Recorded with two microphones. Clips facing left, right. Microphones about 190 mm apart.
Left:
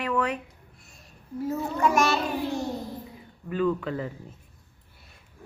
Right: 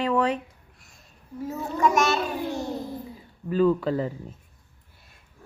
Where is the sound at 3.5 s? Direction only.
35° right (ahead or behind).